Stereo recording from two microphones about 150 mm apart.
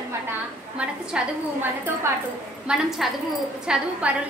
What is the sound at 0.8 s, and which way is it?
Speech, 10° right (ahead or behind).